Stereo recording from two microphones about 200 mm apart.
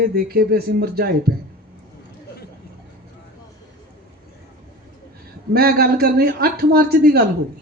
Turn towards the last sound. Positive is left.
turn(degrees=-50)  # may be behind; listen again after turning